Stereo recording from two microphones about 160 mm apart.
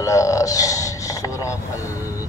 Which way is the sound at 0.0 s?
20° left (ahead or behind).